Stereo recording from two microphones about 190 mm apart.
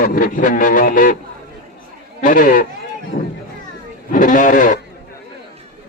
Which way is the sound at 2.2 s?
45° left (ahead or behind).